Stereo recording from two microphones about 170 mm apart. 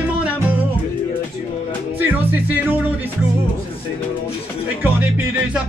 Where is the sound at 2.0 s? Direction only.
10° right (ahead or behind).